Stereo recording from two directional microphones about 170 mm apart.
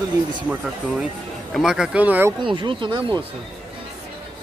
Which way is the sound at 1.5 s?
Centre (ahead or behind).